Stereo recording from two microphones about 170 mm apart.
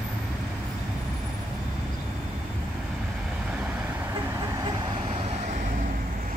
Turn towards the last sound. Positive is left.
turn(degrees=-40)  # may be behind; listen again after turning